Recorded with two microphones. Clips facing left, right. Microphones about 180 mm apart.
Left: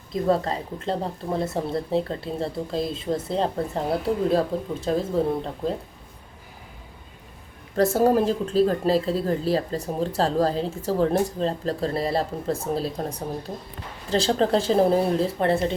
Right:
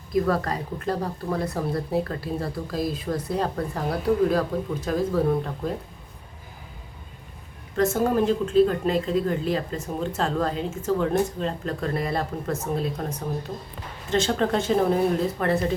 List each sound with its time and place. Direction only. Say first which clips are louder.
0.1 s speech: left 1 dB; 25° left (ahead or behind)
7.8 s a woman's voice: left 2 dB; 35° left (ahead or behind)